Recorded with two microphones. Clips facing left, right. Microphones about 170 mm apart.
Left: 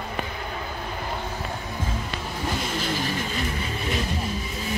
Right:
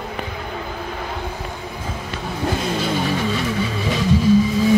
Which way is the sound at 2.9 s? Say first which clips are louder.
Right 7 dB; 80° right.